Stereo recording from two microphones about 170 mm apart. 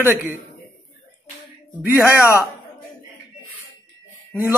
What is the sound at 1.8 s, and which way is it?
Speech, 10° right (ahead or behind).